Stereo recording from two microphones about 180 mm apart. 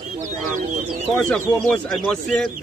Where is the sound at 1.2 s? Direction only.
5° left (ahead or behind).